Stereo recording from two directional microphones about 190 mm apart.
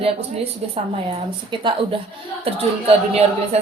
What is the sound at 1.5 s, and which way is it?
A woman's voice, 25° right (ahead or behind).